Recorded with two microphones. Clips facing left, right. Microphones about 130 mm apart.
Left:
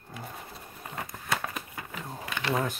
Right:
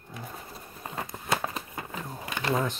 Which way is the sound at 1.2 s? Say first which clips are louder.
Right 3 dB; 30° right (ahead or behind).